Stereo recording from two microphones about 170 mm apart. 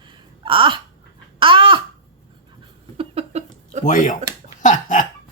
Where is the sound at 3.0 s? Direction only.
40° right (ahead or behind).